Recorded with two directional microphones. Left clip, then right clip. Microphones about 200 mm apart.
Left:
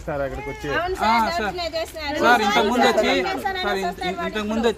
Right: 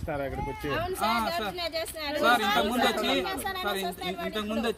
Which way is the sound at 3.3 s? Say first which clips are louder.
Left 7 dB; 10° left (ahead or behind).